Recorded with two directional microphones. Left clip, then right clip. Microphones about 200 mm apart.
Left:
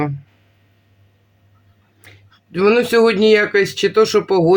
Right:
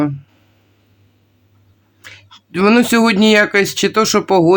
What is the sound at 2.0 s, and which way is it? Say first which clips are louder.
Speech: right 9 dB; 25° right (ahead or behind).